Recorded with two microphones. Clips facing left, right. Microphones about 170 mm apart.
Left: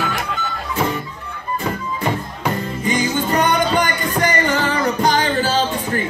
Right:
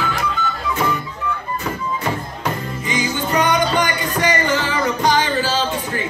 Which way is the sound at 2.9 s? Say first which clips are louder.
Left 2 dB; 45° left (ahead or behind).